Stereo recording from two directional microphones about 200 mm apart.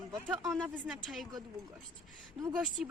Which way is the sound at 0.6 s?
Centre (ahead or behind).